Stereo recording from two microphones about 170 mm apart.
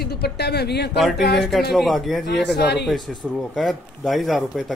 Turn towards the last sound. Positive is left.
turn(degrees=0)  # may be behind; listen again after turning